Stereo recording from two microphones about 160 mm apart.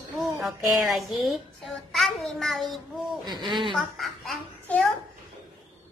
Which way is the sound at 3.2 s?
25° right (ahead or behind).